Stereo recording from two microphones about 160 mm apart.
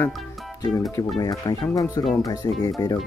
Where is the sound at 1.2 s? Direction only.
20° left (ahead or behind).